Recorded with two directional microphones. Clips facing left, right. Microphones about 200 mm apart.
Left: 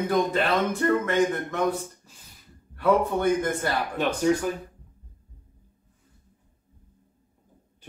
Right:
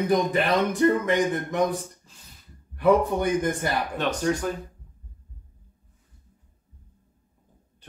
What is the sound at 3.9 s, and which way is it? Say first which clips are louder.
Speech: left 5 dB; 10° left (ahead or behind).